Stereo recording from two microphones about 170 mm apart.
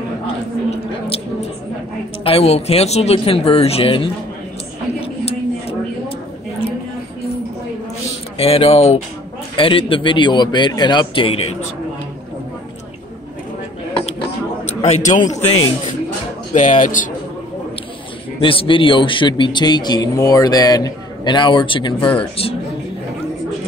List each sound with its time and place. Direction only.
0.7 s a sound: 35° left (ahead or behind)
2.2 s speech: 35° left (ahead or behind)
5.0 s a sound: 35° left (ahead or behind)
8.4 s a man's voice: 35° left (ahead or behind)
14.8 s a man's voice: 45° left (ahead or behind)
18.4 s a man's voice: 30° left (ahead or behind)